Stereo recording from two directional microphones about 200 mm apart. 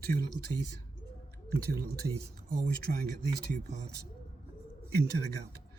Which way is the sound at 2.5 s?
45° right (ahead or behind).